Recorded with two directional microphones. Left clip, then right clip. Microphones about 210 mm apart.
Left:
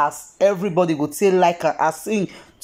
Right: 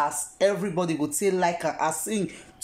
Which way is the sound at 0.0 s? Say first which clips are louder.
Left 6 dB; 5° left (ahead or behind).